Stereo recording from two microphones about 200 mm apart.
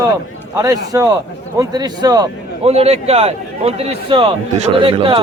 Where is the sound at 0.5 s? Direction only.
15° right (ahead or behind).